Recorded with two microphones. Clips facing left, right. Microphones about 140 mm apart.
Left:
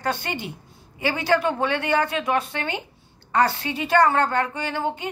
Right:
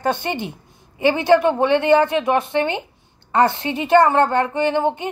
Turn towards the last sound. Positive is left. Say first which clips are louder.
# right 8 dB
turn(degrees=-20)  # may be behind; listen again after turning